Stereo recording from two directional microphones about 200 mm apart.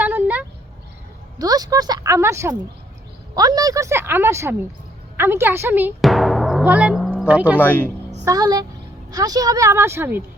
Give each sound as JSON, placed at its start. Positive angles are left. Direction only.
{"t": 0.0, "sound": "a sound", "side_deg": -10}
{"t": 1.4, "sound": "a woman's voice", "side_deg": -20}
{"t": 6.0, "sound": "timpani", "side_deg": 0}
{"t": 7.6, "sound": "speech", "side_deg": 10}
{"t": 8.2, "sound": "a woman's voice", "side_deg": -20}